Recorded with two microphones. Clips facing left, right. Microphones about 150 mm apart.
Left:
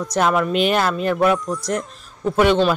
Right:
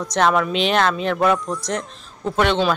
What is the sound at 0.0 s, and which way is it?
A man's voice, 5° left (ahead or behind).